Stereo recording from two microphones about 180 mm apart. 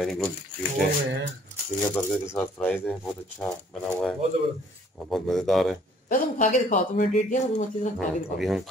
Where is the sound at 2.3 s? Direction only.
10° left (ahead or behind).